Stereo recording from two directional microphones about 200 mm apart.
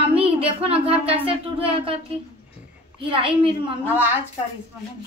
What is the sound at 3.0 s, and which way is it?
Speech, 25° right (ahead or behind).